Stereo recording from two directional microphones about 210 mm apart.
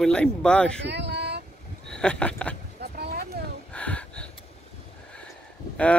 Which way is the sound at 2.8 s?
50° right (ahead or behind).